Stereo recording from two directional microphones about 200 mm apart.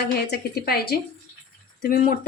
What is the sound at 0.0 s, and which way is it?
Speech, 55° left (ahead or behind).